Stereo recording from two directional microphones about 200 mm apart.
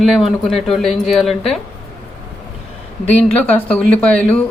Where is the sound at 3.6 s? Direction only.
5° left (ahead or behind).